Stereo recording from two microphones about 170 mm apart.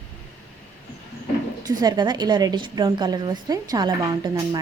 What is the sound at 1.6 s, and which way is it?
A woman's voice, 25° right (ahead or behind).